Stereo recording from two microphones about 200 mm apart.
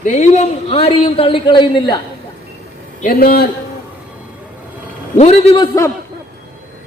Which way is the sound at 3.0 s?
45° left (ahead or behind).